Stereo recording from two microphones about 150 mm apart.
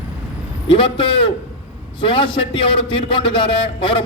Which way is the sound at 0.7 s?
35° left (ahead or behind).